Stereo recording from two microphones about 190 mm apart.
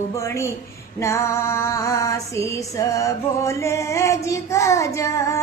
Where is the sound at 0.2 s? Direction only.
15° left (ahead or behind).